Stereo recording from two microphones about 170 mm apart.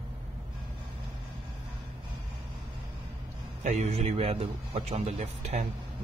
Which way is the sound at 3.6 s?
40° right (ahead or behind).